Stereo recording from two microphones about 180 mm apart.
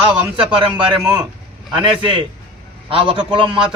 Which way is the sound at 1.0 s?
5° right (ahead or behind).